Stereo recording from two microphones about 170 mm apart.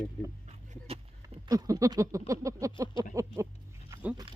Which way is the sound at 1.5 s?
20° right (ahead or behind).